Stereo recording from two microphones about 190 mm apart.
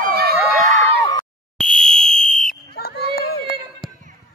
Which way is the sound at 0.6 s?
35° right (ahead or behind).